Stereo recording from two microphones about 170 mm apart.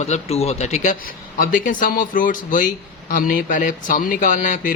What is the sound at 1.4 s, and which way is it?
Speech, 55° left (ahead or behind).